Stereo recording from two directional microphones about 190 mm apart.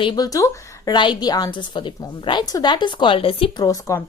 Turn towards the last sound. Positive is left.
turn(degrees=15)  # may be behind; listen again after turning